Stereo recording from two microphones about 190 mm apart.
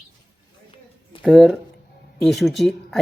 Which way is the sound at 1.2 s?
Centre (ahead or behind).